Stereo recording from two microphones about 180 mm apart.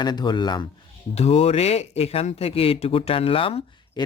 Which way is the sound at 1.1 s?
35° left (ahead or behind).